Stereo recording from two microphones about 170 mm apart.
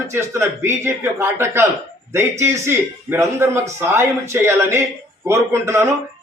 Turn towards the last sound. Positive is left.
turn(degrees=-15)  # may be behind; listen again after turning